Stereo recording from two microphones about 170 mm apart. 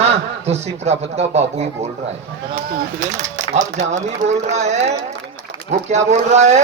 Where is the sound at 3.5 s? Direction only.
45° right (ahead or behind).